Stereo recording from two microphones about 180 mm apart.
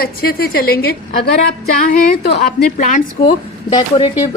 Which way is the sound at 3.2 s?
30° left (ahead or behind).